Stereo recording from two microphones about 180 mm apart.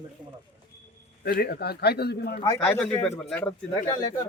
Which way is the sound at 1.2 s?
60° left (ahead or behind).